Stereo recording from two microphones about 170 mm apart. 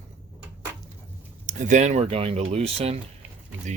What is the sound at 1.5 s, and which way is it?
Speech, 45° right (ahead or behind).